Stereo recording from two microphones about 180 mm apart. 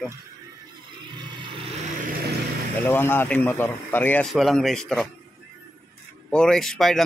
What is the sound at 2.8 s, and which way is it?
Speech, 10° left (ahead or behind).